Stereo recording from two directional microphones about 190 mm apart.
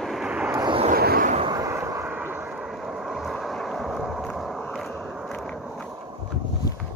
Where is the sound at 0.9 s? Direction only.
50° right (ahead or behind).